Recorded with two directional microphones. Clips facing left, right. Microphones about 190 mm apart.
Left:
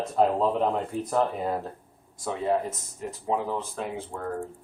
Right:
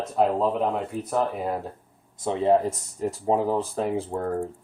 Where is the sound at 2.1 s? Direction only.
25° right (ahead or behind).